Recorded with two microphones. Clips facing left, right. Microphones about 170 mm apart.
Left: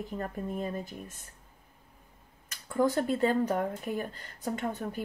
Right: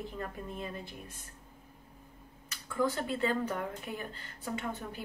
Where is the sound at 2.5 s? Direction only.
45° left (ahead or behind).